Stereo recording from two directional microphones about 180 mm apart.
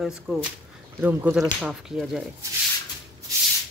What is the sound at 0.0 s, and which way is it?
Speech, 5° right (ahead or behind).